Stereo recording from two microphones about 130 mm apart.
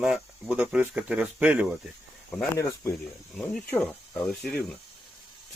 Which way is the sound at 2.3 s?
15° left (ahead or behind).